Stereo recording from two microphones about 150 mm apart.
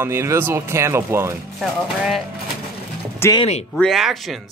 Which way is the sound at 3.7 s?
Centre (ahead or behind).